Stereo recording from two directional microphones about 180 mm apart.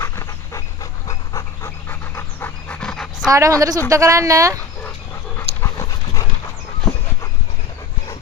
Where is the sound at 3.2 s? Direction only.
20° right (ahead or behind).